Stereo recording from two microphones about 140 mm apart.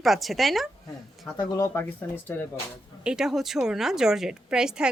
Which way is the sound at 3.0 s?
5° right (ahead or behind).